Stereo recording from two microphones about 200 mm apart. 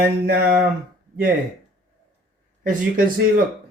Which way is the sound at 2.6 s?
45° right (ahead or behind).